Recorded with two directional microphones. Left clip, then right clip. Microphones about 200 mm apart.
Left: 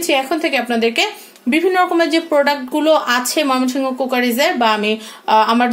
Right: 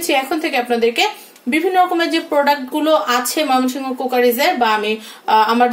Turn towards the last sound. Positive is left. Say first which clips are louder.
# even
turn(degrees=30)  # may be behind; listen again after turning